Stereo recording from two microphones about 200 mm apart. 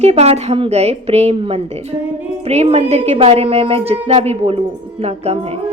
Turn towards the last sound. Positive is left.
turn(degrees=-30)  # may be behind; listen again after turning